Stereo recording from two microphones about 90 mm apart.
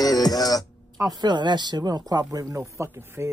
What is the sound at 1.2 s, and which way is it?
Speech, 55° right (ahead or behind).